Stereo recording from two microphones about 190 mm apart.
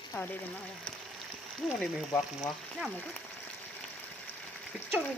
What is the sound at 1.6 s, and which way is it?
Speech, centre (ahead or behind).